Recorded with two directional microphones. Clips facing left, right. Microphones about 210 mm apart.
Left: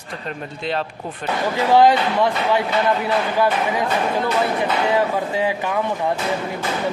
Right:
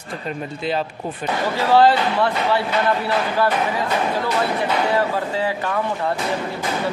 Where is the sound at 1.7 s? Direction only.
15° left (ahead or behind).